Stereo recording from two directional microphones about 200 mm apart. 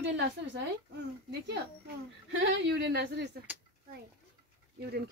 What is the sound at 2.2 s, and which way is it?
Speech, 60° right (ahead or behind).